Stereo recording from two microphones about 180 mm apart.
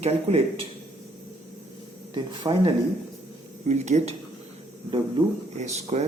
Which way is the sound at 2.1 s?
25° right (ahead or behind).